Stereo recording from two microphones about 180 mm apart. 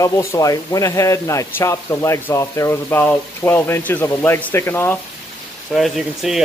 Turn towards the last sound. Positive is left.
turn(degrees=0)  # may be behind; listen again after turning